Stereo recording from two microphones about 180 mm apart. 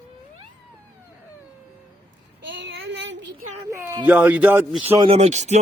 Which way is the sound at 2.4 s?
90° right.